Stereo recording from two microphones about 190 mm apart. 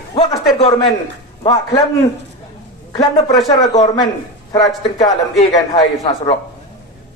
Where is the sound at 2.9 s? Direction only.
25° left (ahead or behind).